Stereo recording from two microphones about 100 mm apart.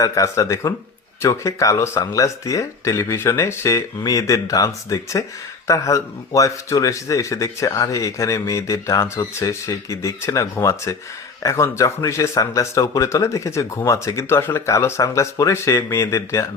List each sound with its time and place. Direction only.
0.0 s a man's voice: 35° left (ahead or behind)